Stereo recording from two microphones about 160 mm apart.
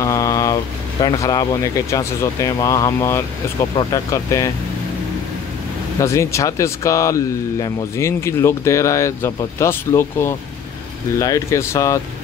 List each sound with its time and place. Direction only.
0.0 s vehicle: 20° left (ahead or behind)
1.0 s speech: 20° left (ahead or behind)
5.9 s speech: 20° left (ahead or behind)